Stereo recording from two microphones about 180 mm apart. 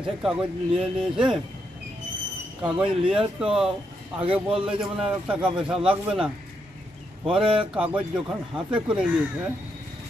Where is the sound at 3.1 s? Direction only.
5° right (ahead or behind).